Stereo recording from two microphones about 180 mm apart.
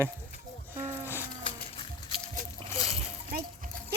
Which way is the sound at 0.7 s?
10° right (ahead or behind).